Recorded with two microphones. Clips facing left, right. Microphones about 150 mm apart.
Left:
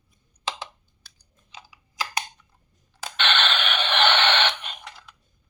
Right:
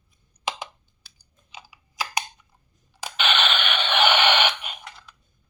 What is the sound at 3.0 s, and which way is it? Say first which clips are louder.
Radio: even; 5° right (ahead or behind).